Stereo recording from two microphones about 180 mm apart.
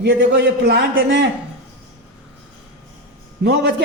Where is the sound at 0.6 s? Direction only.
60° right (ahead or behind).